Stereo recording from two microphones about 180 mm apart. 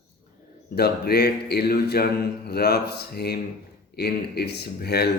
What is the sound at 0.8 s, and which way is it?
Speech, 65° left (ahead or behind).